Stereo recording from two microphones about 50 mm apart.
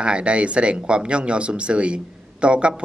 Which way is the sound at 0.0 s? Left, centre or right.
Right.